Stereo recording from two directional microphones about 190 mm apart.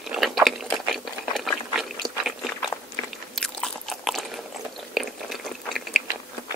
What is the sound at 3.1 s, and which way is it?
Biting, centre (ahead or behind).